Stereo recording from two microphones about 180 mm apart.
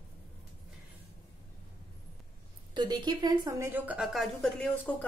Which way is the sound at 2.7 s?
25° right (ahead or behind).